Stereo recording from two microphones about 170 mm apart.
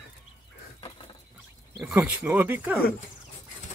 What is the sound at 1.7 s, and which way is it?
Speech, 5° right (ahead or behind).